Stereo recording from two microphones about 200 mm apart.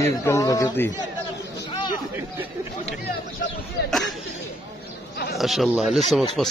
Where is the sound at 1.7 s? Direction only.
25° left (ahead or behind).